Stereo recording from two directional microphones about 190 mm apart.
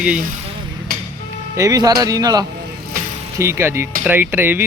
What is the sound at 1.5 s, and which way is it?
Speech, 20° right (ahead or behind).